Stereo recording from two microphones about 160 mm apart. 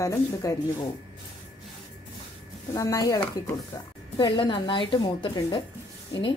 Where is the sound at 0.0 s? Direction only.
20° left (ahead or behind).